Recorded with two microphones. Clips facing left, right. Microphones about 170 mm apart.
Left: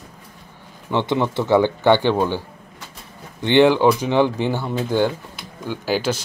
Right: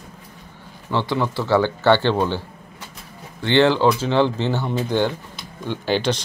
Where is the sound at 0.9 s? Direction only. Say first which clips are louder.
Left 2 dB; 20° left (ahead or behind).